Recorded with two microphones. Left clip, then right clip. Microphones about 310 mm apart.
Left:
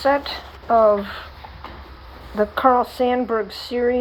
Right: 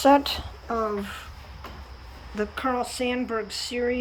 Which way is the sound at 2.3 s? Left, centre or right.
Centre.